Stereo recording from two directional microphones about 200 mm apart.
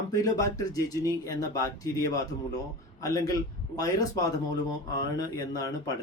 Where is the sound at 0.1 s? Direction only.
15° left (ahead or behind).